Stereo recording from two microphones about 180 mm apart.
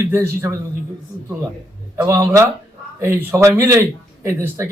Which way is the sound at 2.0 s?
15° right (ahead or behind).